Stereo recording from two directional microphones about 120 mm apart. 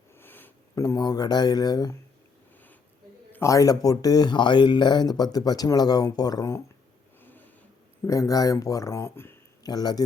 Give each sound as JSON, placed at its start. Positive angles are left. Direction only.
{"t": 0.2, "sound": "a sound", "side_deg": 15}
{"t": 0.8, "sound": "speech", "side_deg": 30}
{"t": 3.3, "sound": "speech", "side_deg": 25}
{"t": 7.2, "sound": "a sound", "side_deg": 15}
{"t": 8.0, "sound": "speech", "side_deg": 30}
{"t": 9.6, "sound": "speech", "side_deg": 35}